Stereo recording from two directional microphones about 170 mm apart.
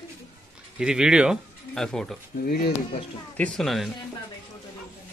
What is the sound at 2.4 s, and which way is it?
Speech, 65° left (ahead or behind).